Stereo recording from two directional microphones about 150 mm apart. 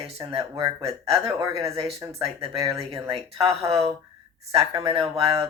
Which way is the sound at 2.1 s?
40° right (ahead or behind).